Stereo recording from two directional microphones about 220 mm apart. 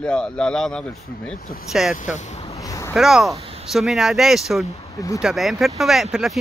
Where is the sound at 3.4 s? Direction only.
25° right (ahead or behind).